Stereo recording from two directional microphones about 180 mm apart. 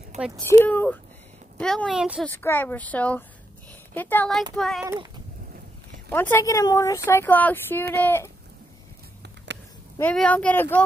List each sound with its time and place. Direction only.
0.7 s a woman's voice: 10° left (ahead or behind)
2.2 s a woman's voice: 10° left (ahead or behind)
6.0 s speech: 10° left (ahead or behind)
9.9 s speech: 10° left (ahead or behind)